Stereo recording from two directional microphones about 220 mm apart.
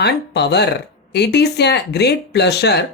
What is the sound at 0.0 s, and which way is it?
Speech, 50° left (ahead or behind).